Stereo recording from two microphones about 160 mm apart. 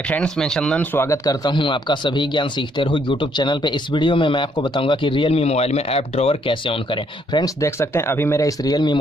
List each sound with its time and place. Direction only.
0.1 s speech: 5° left (ahead or behind); by 8.9 s 25° left (ahead or behind)